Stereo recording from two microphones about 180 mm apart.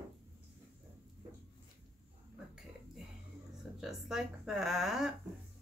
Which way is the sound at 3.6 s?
Centre (ahead or behind).